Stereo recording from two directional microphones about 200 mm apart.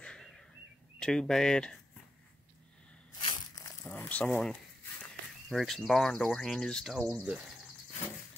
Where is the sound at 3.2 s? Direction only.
25° left (ahead or behind).